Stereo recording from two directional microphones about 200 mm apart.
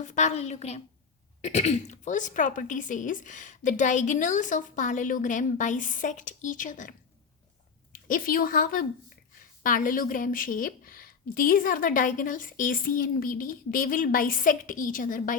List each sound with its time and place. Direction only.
0.0 s a woman's voice: 35° left (ahead or behind)
7.9 s a woman's voice: 45° left (ahead or behind)